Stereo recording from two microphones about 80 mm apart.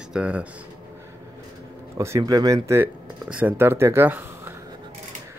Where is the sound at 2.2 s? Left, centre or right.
Right.